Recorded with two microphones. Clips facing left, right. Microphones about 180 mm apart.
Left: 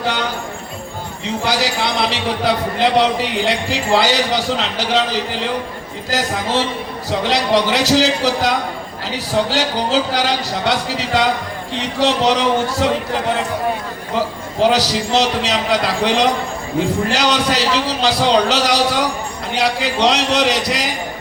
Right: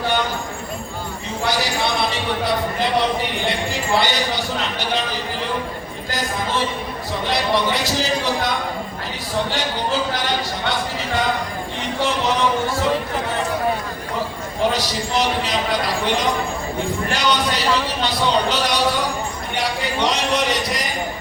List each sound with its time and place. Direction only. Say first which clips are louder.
1.5 s speech: left 1 dB; 90° left
6.1 s a man's voice: left 5 dB; 80° left
14.2 s a man's voice: left 5 dB; 90° left